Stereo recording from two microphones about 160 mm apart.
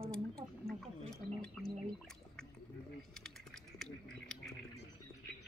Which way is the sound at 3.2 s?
5° left (ahead or behind).